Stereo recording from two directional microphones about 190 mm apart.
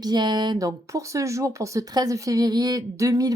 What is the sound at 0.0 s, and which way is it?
A woman's voice, 20° right (ahead or behind).